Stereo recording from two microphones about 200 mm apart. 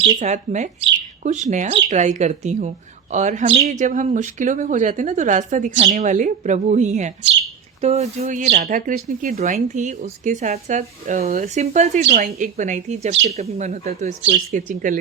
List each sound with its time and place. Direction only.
0.2 s speech: 35° right (ahead or behind)